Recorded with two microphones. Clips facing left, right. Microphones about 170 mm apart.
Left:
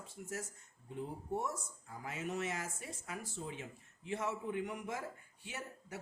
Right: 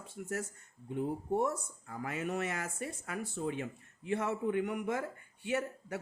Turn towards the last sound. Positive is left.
turn(degrees=-65)  # may be behind; listen again after turning